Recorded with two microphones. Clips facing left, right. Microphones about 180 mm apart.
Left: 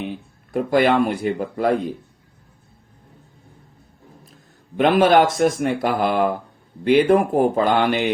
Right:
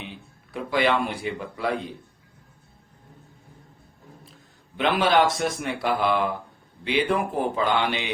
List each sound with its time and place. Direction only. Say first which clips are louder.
0.5 s speech: left 6 dB; 45° left (ahead or behind)
4.8 s speech: left 6 dB; 45° left (ahead or behind)